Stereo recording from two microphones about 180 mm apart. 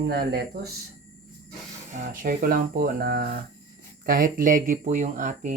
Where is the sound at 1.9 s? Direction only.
50° right (ahead or behind).